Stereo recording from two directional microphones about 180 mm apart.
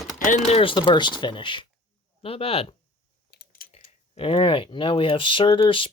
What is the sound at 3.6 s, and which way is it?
Typing, 55° left (ahead or behind).